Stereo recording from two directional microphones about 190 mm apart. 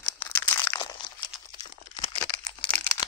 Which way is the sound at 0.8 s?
25° left (ahead or behind).